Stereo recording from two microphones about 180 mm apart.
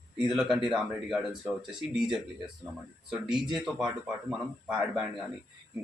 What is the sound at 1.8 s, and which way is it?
Speech, 35° left (ahead or behind).